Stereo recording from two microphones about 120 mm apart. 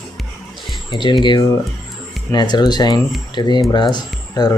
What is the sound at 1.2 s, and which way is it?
Speech, 40° left (ahead or behind).